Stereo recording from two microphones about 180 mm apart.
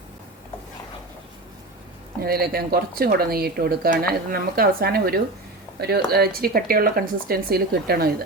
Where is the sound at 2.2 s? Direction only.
55° right (ahead or behind).